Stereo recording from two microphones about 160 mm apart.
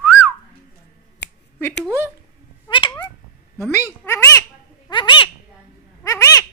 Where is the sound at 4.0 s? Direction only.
15° left (ahead or behind).